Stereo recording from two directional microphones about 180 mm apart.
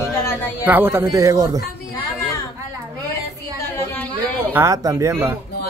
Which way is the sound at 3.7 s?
10° left (ahead or behind).